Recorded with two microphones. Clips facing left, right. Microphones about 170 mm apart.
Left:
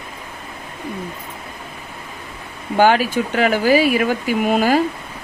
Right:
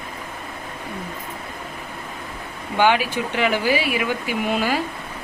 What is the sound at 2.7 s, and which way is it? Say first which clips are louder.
Speech: left 4 dB; 40° left (ahead or behind).